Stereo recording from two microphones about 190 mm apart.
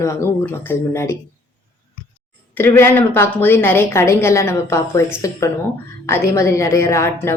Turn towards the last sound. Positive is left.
turn(degrees=15)  # may be behind; listen again after turning